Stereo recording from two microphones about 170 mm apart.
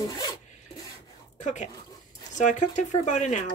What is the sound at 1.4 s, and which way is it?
Speech, 45° left (ahead or behind).